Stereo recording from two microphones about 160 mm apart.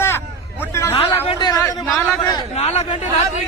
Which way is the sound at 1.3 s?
25° left (ahead or behind).